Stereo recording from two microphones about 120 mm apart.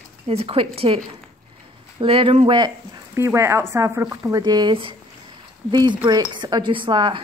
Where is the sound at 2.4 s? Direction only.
35° right (ahead or behind).